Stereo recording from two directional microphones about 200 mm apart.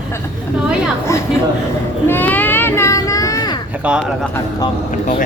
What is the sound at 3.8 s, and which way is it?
Speech, 5° right (ahead or behind).